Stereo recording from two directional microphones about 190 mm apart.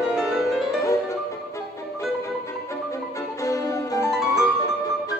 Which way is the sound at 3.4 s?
15° left (ahead or behind).